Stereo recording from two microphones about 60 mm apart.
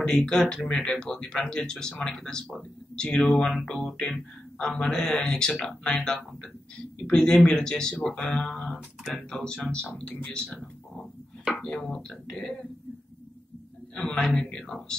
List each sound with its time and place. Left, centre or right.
0.0 s speech: centre
11.6 s speech: centre
13.9 s speech: centre